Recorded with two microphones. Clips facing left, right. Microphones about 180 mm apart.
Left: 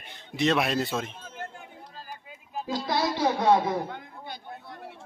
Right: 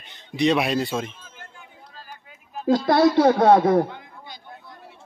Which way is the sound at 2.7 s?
50° right (ahead or behind).